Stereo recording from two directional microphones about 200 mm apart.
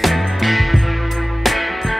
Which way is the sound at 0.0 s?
Centre (ahead or behind).